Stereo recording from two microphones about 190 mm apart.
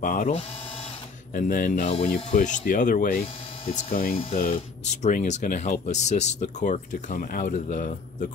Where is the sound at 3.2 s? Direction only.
30° left (ahead or behind).